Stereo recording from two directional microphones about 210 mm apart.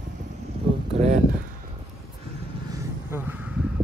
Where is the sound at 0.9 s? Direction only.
30° right (ahead or behind).